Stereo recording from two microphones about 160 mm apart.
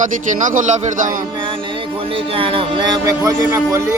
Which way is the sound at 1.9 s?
35° right (ahead or behind).